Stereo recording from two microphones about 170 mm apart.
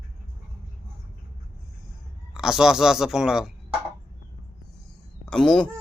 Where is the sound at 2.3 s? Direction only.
5° right (ahead or behind).